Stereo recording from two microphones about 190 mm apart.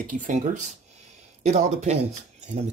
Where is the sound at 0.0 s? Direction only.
40° right (ahead or behind).